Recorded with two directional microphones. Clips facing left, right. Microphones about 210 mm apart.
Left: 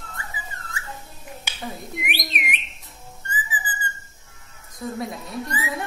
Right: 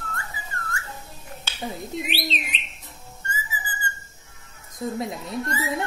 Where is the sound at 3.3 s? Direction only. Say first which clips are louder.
Left 2 dB; 15° left (ahead or behind).